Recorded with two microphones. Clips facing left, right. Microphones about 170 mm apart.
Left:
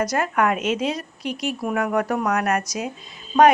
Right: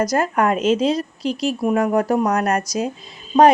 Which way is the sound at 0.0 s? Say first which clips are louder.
Right 3 dB; 35° right (ahead or behind).